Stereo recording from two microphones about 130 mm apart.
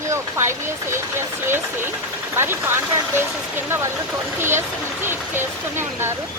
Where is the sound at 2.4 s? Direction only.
20° right (ahead or behind).